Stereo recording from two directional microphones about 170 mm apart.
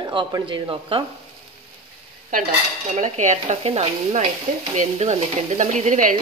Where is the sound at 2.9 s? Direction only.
45° right (ahead or behind).